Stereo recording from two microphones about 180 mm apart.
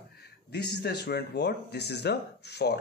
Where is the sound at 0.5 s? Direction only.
65° left (ahead or behind).